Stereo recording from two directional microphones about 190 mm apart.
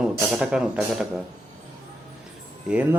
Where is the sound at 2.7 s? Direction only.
10° right (ahead or behind).